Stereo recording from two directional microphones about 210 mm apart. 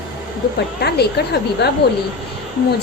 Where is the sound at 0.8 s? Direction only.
50° left (ahead or behind).